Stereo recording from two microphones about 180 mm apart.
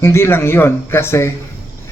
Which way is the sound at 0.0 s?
15° left (ahead or behind).